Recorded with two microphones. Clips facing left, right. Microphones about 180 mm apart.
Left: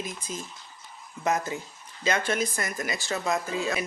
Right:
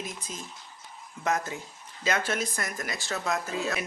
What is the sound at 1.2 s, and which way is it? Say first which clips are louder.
Speech: left 2 dB; centre (ahead or behind).